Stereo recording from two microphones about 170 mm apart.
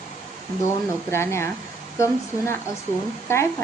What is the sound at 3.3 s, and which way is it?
Speech, 15° left (ahead or behind).